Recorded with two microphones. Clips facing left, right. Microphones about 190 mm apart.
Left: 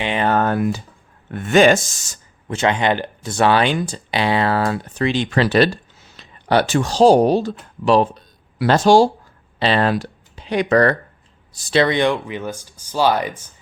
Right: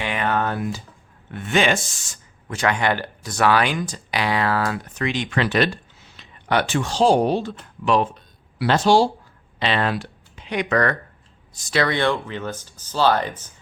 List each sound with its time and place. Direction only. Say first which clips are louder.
0.0 s typing: left 5 dB; 30° left (ahead or behind)
0.5 s speech: left 7 dB; 60° left (ahead or behind)
1.3 s speech: left 7 dB; 45° left (ahead or behind)
2.5 s speech: left 3 dB; 25° left (ahead or behind)